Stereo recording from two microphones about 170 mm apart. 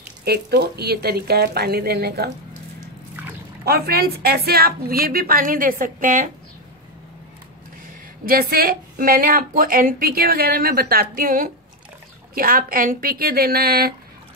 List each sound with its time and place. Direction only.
0.2 s speech: 70° right (ahead or behind)
3.6 s a woman's voice: 65° right (ahead or behind); by 6.3 s 50° right (ahead or behind)
8.3 s a woman's voice: 60° right (ahead or behind)